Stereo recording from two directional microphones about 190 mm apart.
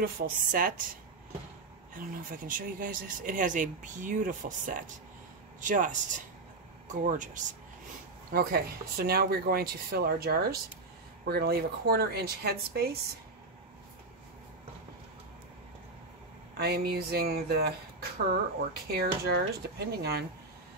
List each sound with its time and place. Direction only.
0.0 s speech: 45° right (ahead or behind)
2.0 s speech: 45° right (ahead or behind)
8.3 s speech: 55° right (ahead or behind)
16.5 s speech: 55° right (ahead or behind)
18.7 s speech: 55° right (ahead or behind)